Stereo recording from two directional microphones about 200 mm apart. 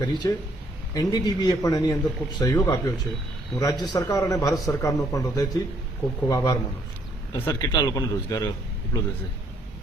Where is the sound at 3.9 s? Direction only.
15° left (ahead or behind).